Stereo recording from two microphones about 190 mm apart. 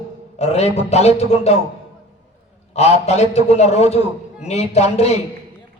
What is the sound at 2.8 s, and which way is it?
A man's voice, 35° left (ahead or behind).